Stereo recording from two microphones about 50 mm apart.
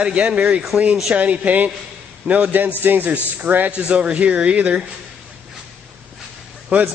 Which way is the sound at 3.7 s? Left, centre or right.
Right.